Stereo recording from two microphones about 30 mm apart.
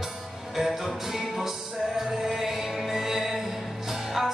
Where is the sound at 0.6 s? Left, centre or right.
Centre.